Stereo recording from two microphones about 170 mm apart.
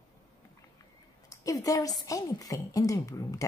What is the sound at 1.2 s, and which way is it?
A woman's voice, 20° left (ahead or behind).